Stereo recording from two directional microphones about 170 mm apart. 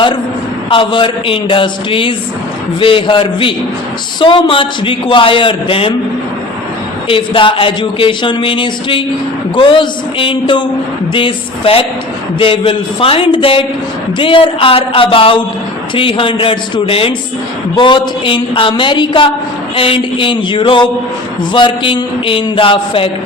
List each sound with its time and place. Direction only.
0.7 s speech: 30° left (ahead or behind)
7.1 s a woman's voice: 30° left (ahead or behind)